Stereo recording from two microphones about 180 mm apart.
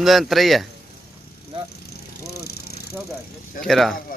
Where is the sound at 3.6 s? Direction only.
Centre (ahead or behind).